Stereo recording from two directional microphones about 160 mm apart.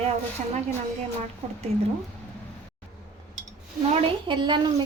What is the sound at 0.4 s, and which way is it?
Speech, 45° right (ahead or behind).